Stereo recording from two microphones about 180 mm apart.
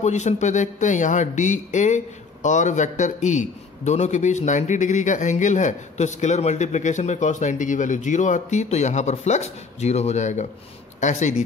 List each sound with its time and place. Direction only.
0.0 s a man's voice: 40° left (ahead or behind)